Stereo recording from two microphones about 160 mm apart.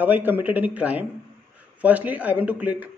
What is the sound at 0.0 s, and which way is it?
Speech, 10° right (ahead or behind).